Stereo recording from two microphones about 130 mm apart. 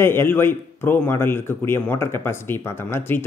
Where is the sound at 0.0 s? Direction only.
20° left (ahead or behind).